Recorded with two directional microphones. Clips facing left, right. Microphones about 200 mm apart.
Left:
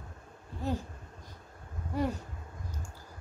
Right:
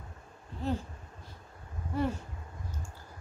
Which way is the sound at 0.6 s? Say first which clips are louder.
Right 1 dB; 10° left (ahead or behind).